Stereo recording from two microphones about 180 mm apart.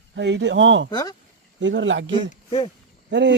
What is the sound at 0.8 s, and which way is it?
Speech, 20° left (ahead or behind).